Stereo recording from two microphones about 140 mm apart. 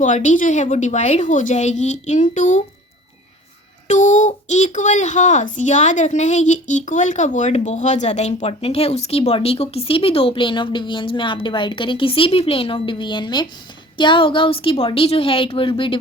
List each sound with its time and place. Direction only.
0.0 s a woman's voice: 60° left (ahead or behind)
3.8 s a child's voice: 60° left (ahead or behind); by 16.0 s 40° left (ahead or behind)